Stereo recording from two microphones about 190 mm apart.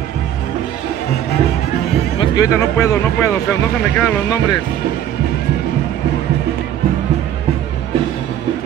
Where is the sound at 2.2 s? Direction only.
20° left (ahead or behind).